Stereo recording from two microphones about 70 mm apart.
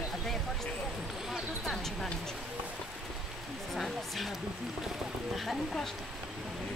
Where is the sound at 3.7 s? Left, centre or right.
Centre.